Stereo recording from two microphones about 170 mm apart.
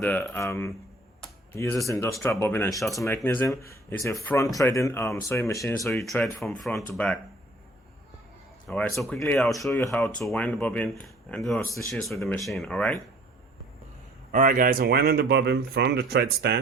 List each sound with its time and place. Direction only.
0.0 s speech: 10° left (ahead or behind)
5.8 s speech: centre (ahead or behind)
8.6 s speech: 5° left (ahead or behind)
9.2 s speech: 15° left (ahead or behind)
14.3 s speech: 55° right (ahead or behind); by 16.6 s 75° right (ahead or behind)